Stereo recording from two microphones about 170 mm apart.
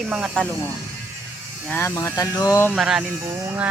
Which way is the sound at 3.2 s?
15° right (ahead or behind).